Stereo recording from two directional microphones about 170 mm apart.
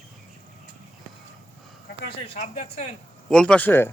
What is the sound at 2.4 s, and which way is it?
Speech, 40° left (ahead or behind).